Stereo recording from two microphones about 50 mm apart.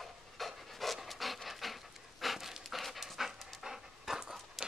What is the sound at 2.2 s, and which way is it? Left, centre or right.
Dog, centre.